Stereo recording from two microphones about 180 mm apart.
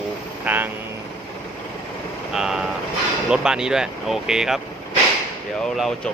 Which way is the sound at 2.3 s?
5° right (ahead or behind).